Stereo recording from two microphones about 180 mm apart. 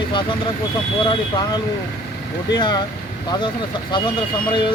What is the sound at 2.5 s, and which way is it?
Speech, 25° left (ahead or behind).